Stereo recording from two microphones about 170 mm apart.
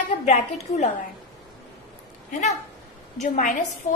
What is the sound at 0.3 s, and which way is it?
Speech, 40° left (ahead or behind).